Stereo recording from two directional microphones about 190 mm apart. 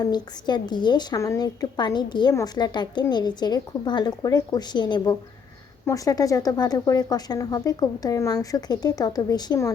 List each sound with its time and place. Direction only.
0.0 s a woman's voice: 20° left (ahead or behind)